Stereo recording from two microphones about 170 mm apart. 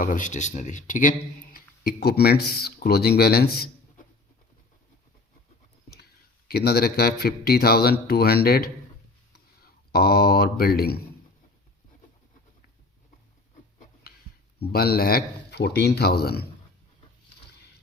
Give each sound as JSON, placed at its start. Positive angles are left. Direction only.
{"t": 0.0, "sound": "speech", "side_deg": 50}
{"t": 1.5, "sound": "speech", "side_deg": 60}
{"t": 6.5, "sound": "speech", "side_deg": 65}
{"t": 9.9, "sound": "speech", "side_deg": 65}
{"t": 14.7, "sound": "speech", "side_deg": 65}